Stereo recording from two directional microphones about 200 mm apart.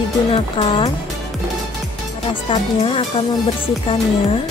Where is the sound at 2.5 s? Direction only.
30° left (ahead or behind).